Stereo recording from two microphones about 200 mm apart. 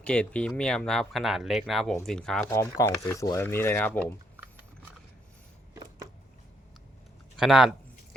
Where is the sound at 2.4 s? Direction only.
15° left (ahead or behind).